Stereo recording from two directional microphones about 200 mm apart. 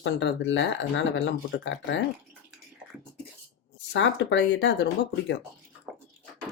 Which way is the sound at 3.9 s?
65° left (ahead or behind).